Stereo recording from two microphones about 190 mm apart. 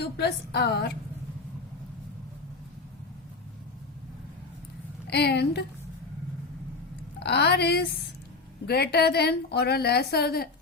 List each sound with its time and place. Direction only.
0.0 s a woman's voice: 60° left (ahead or behind)
5.0 s a woman's voice: 60° left (ahead or behind)
7.2 s a woman's voice: 60° left (ahead or behind)